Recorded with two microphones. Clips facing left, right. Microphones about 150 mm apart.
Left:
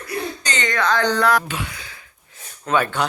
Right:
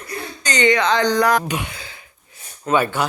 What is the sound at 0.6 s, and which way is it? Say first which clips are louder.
Speech: right 3 dB; 20° right (ahead or behind).